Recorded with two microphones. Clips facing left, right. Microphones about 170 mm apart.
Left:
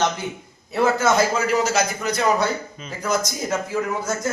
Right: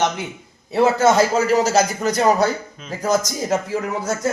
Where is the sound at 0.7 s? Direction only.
35° right (ahead or behind).